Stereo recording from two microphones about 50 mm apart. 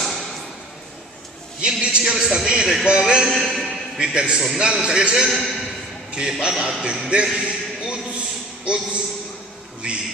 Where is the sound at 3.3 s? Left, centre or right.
Centre.